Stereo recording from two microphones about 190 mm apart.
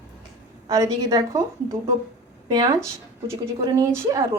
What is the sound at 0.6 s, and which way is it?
Speech, 15° right (ahead or behind).